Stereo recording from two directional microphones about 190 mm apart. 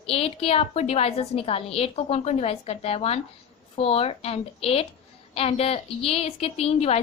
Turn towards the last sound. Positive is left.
turn(degrees=35)  # may be behind; listen again after turning